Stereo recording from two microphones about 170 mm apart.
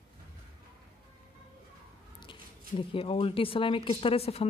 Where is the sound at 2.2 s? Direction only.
30° left (ahead or behind).